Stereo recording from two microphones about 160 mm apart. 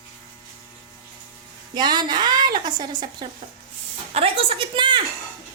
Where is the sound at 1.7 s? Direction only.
25° right (ahead or behind).